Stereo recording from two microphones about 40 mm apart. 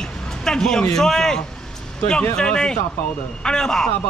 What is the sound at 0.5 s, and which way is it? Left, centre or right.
A man's voice, centre.